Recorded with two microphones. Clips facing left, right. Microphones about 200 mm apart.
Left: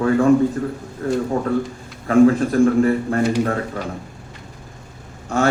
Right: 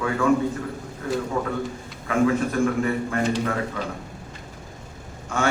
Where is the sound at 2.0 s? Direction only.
40° left (ahead or behind).